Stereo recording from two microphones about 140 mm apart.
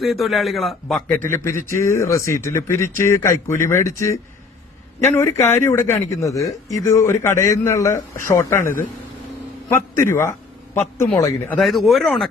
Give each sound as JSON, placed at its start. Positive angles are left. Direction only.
{"t": 0.0, "sound": "a man's voice", "side_deg": 0}
{"t": 1.3, "sound": "a man's voice", "side_deg": 20}
{"t": 8.5, "sound": "a man's voice", "side_deg": 75}
{"t": 9.7, "sound": "a man's voice", "side_deg": 20}
{"t": 11.5, "sound": "a man's voice", "side_deg": 0}